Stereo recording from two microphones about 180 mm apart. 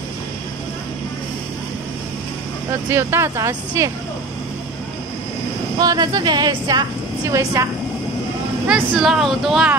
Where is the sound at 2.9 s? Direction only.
15° right (ahead or behind).